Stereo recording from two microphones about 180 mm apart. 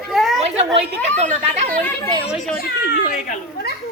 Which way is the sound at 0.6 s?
35° right (ahead or behind).